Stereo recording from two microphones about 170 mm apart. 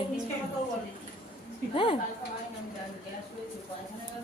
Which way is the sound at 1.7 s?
30° left (ahead or behind).